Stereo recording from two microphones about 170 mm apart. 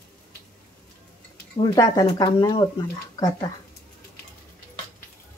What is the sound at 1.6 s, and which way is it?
Speech, 20° left (ahead or behind).